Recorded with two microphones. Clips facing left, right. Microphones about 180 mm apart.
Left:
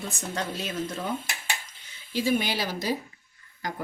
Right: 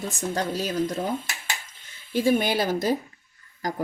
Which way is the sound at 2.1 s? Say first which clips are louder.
Right 4 dB; 50° right (ahead or behind).